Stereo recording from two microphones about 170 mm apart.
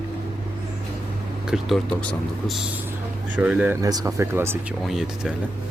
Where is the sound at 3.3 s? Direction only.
10° right (ahead or behind).